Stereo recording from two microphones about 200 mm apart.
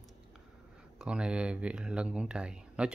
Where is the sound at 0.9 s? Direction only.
5° right (ahead or behind).